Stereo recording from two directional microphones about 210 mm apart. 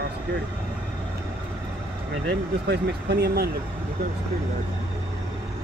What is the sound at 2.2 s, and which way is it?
Speech, 50° right (ahead or behind).